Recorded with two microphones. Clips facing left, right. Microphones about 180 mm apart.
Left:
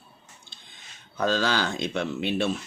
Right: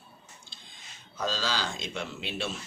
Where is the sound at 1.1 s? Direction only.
55° left (ahead or behind).